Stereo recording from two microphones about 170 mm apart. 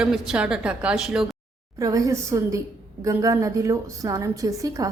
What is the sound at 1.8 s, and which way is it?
A woman's voice, 20° right (ahead or behind).